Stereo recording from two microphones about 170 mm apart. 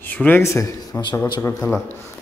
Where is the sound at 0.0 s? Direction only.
10° left (ahead or behind).